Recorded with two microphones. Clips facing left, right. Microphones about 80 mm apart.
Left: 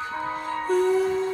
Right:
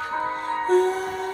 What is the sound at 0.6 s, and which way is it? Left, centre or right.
Music, right.